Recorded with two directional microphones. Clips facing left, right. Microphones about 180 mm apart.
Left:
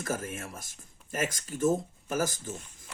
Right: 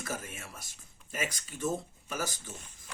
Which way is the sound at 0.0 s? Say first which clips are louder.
Left 6 dB; 50° left (ahead or behind).